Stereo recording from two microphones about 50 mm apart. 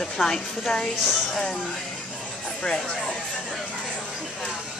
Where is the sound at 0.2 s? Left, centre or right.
Centre.